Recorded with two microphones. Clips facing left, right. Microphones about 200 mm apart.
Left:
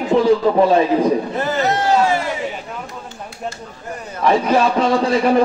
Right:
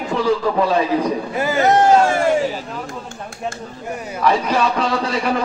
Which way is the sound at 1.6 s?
50° right (ahead or behind).